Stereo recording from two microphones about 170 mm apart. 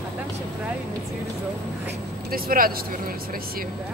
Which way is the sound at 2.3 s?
60° right (ahead or behind).